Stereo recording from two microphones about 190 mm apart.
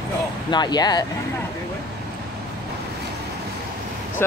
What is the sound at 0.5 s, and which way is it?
Speech, 20° left (ahead or behind).